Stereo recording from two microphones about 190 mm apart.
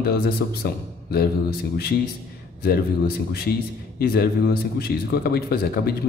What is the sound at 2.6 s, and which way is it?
A man's voice, 55° left (ahead or behind).